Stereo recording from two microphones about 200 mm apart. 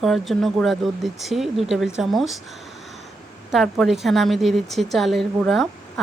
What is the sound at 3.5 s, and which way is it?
Speech, centre (ahead or behind).